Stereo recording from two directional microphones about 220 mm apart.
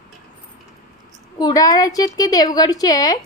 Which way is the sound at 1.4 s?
15° left (ahead or behind).